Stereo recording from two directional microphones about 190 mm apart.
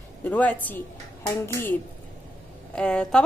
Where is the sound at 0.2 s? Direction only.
10° left (ahead or behind).